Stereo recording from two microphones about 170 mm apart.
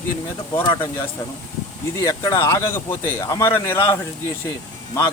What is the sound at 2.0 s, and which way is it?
Speech, 20° left (ahead or behind).